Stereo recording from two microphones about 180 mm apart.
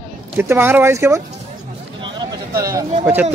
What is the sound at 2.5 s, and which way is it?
Speech, 20° right (ahead or behind).